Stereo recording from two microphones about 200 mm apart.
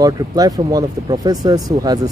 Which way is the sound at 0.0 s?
20° right (ahead or behind).